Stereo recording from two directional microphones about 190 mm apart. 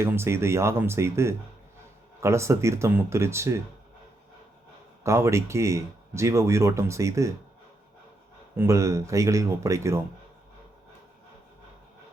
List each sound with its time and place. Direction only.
0.0 s speech: 15° right (ahead or behind)
5.0 s speech: 15° right (ahead or behind)
8.5 s speech: 15° right (ahead or behind)